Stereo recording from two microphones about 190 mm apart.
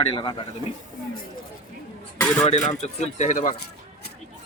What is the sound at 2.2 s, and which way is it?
Speech, 5° left (ahead or behind).